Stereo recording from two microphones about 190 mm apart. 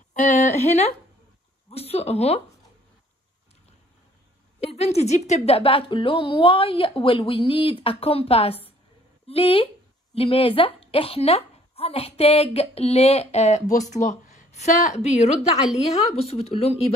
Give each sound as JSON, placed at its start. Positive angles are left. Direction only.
{"t": 0.1, "sound": "speech", "side_deg": 40}
{"t": 4.6, "sound": "a woman's voice", "side_deg": 35}